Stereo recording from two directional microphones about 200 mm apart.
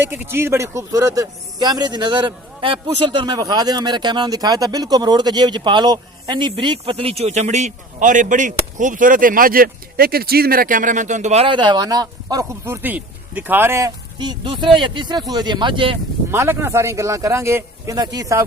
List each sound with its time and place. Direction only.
0.1 s a man's voice: 10° right (ahead or behind)
16.3 s a man's voice: 10° right (ahead or behind)